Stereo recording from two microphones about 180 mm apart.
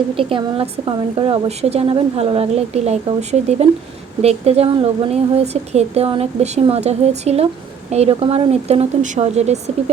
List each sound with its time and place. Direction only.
0.2 s speech: 30° right (ahead or behind)